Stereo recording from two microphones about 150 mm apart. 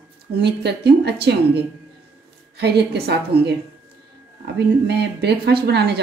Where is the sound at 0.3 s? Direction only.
90° right.